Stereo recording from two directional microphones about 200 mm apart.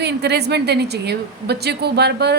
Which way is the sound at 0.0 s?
55° right (ahead or behind).